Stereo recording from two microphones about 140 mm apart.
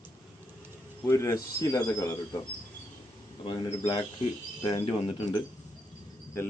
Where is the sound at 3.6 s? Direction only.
30° left (ahead or behind).